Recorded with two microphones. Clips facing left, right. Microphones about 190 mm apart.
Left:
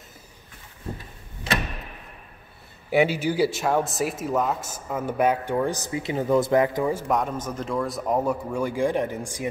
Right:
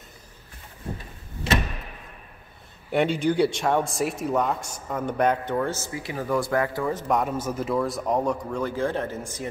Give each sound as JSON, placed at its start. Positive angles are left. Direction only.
{"t": 2.9, "sound": "speech", "side_deg": 5}
{"t": 7.1, "sound": "speech", "side_deg": -5}